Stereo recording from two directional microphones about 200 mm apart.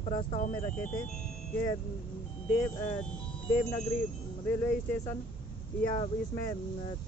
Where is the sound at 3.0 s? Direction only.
10° left (ahead or behind).